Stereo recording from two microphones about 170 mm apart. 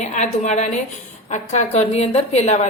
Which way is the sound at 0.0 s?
45° left (ahead or behind).